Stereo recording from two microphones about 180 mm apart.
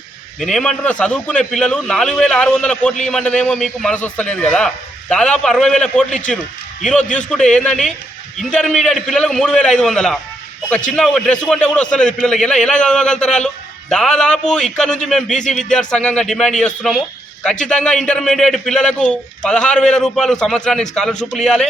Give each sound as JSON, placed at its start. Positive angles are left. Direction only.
{"t": 0.3, "sound": "a man's voice", "side_deg": 5}
{"t": 15.4, "sound": "speech", "side_deg": 45}
{"t": 15.7, "sound": "a man's voice", "side_deg": 5}